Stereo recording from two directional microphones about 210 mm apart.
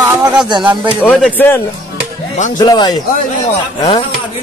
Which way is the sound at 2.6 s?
20° left (ahead or behind).